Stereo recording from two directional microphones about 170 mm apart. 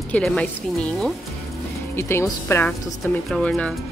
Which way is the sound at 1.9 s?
15° left (ahead or behind).